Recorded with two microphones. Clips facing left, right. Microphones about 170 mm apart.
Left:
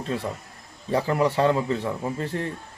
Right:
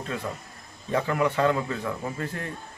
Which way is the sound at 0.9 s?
30° left (ahead or behind).